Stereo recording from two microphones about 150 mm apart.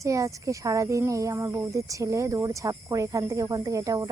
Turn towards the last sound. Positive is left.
turn(degrees=-25)  # may be behind; listen again after turning